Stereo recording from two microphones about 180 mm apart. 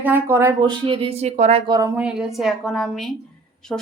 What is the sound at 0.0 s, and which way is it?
Speech, 10° right (ahead or behind).